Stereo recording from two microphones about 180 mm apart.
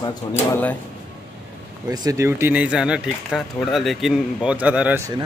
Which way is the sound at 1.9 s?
15° right (ahead or behind).